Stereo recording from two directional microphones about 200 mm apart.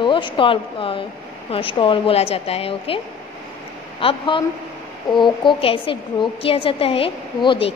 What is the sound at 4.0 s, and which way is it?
A woman's voice, 25° left (ahead or behind).